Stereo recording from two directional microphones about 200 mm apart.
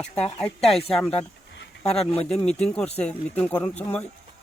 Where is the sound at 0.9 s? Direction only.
Centre (ahead or behind).